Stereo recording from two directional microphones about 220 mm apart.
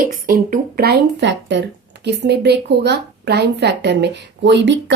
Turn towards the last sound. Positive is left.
turn(degrees=-55)  # may be behind; listen again after turning